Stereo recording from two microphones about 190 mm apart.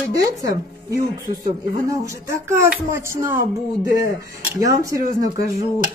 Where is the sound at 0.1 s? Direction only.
20° right (ahead or behind).